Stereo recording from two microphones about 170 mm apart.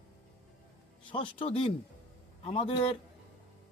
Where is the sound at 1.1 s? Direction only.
30° left (ahead or behind).